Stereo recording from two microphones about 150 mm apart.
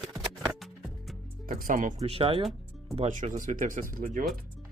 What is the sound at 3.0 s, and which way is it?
Speech, 55° right (ahead or behind).